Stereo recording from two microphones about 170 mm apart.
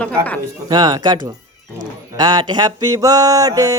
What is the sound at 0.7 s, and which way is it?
Mantra, 25° right (ahead or behind).